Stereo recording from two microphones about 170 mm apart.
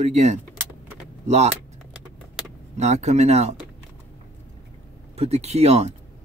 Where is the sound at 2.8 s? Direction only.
40° right (ahead or behind).